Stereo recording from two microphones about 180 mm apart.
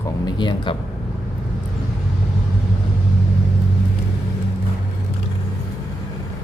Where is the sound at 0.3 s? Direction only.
25° left (ahead or behind).